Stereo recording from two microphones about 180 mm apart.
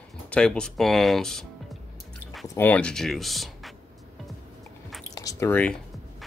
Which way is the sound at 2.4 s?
15° left (ahead or behind).